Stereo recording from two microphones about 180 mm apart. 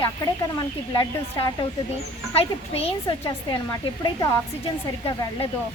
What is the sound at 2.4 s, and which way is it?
Speech, 35° left (ahead or behind).